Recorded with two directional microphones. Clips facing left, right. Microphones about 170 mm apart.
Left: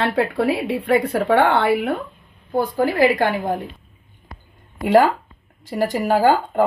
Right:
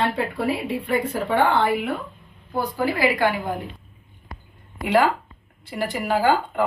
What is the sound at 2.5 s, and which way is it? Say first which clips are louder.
Speech: left 5 dB; 50° left (ahead or behind).